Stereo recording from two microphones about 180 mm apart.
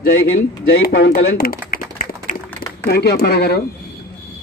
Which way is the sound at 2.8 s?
65° left (ahead or behind).